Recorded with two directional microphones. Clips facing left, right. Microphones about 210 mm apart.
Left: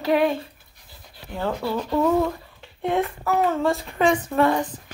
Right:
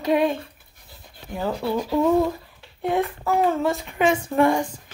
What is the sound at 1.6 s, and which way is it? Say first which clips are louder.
Speech: right 1 dB; 10° right (ahead or behind).